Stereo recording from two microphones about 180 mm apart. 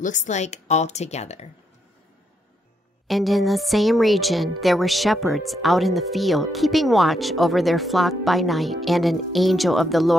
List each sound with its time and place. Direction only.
0.0 s speech: 40° left (ahead or behind)
3.1 s speech: centre (ahead or behind)